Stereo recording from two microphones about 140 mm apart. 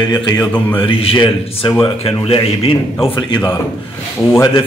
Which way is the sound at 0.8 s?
40° left (ahead or behind).